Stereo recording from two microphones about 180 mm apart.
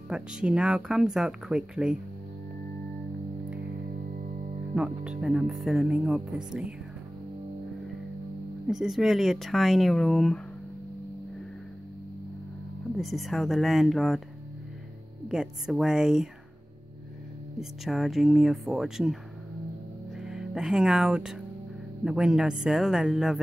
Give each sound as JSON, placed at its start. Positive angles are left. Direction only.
{"t": 0.1, "sound": "speech", "side_deg": -5}
{"t": 4.7, "sound": "speech", "side_deg": -5}
{"t": 8.6, "sound": "speech", "side_deg": 0}
{"t": 12.9, "sound": "speech", "side_deg": 0}
{"t": 15.2, "sound": "speech", "side_deg": -5}
{"t": 17.6, "sound": "speech", "side_deg": 0}
{"t": 20.2, "sound": "speech", "side_deg": -5}